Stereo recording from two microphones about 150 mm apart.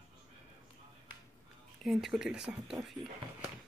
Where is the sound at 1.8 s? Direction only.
Centre (ahead or behind).